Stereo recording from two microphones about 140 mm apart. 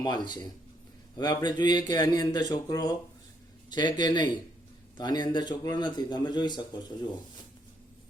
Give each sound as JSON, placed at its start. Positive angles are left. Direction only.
{"t": 0.0, "sound": "a man's voice", "side_deg": 30}